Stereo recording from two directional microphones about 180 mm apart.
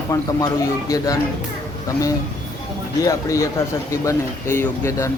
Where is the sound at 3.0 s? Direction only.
15° left (ahead or behind).